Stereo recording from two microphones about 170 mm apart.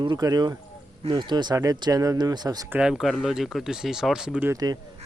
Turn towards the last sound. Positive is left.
turn(degrees=-20)  # may be behind; listen again after turning